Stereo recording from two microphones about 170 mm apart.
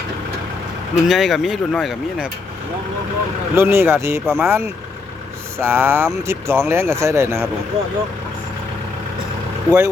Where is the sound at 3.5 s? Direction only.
15° right (ahead or behind).